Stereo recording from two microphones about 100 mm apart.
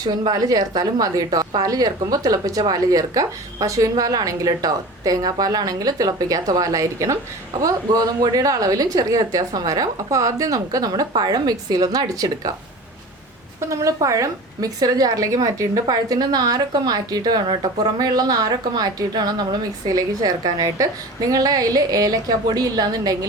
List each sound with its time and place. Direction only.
0.0 s a woman's voice: 45° right (ahead or behind)
13.7 s a woman's voice: 30° right (ahead or behind)